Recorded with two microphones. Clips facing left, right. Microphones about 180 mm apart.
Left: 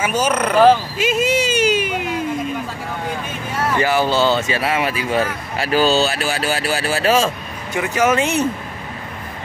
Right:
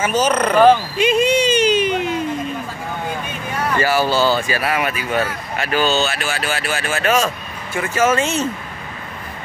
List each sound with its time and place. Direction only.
0.0 s a sound: 10° left (ahead or behind)
3.6 s speech: 15° left (ahead or behind)
7.7 s speech: 15° left (ahead or behind)